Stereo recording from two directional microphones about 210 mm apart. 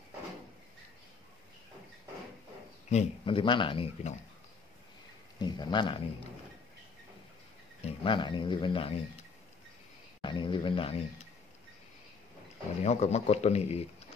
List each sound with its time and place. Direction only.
2.9 s speech: 30° left (ahead or behind)
5.4 s speech: 20° left (ahead or behind)
7.8 s speech: 25° left (ahead or behind)
10.2 s speech: 25° left (ahead or behind)
12.8 s speech: 30° left (ahead or behind)